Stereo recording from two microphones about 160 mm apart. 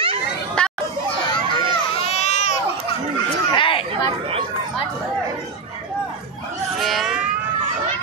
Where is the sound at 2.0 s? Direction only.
45° left (ahead or behind).